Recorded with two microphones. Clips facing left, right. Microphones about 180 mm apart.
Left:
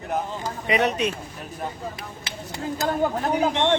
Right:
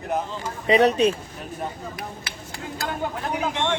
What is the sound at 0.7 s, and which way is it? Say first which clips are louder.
Speech: right 5 dB; 30° right (ahead or behind).